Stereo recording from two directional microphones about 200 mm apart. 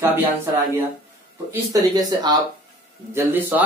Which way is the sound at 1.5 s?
20° right (ahead or behind).